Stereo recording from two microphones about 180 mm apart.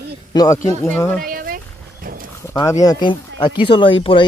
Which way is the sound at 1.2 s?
55° right (ahead or behind).